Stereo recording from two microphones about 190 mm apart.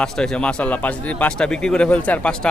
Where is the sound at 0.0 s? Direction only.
5° left (ahead or behind).